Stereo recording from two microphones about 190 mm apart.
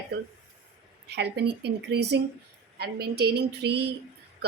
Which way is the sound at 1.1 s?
60° right (ahead or behind).